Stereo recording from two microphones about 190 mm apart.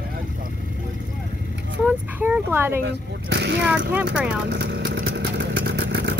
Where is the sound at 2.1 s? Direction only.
10° right (ahead or behind).